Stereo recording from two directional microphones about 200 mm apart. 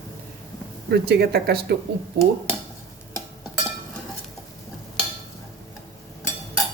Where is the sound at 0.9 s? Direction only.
55° right (ahead or behind).